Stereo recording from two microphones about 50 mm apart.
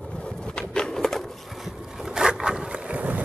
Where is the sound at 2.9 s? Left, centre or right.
Right.